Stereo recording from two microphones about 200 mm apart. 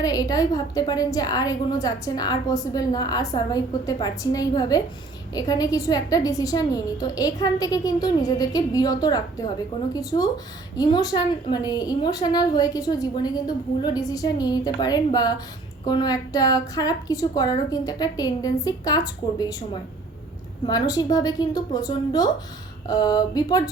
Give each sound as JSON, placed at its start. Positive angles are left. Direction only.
{"t": 0.0, "sound": "a woman's voice", "side_deg": 20}